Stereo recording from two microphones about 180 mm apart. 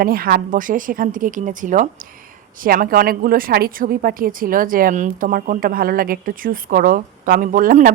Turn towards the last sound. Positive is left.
turn(degrees=-50)  # may be behind; listen again after turning